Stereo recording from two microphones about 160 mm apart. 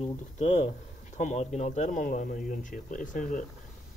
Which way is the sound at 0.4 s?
45° left (ahead or behind).